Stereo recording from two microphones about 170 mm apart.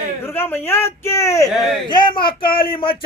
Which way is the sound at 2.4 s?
60° left (ahead or behind).